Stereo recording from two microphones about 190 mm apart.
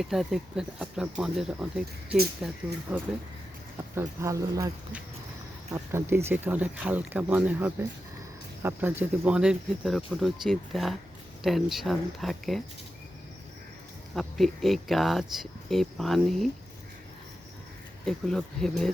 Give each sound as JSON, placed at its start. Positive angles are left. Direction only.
{"t": 0.0, "sound": "speech", "side_deg": 0}
{"t": 3.9, "sound": "speech", "side_deg": -15}
{"t": 5.7, "sound": "speech", "side_deg": -15}
{"t": 14.2, "sound": "speech", "side_deg": 0}
{"t": 18.0, "sound": "speech", "side_deg": 5}